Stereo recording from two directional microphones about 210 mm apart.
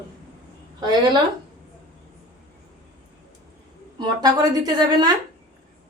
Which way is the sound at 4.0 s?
20° right (ahead or behind).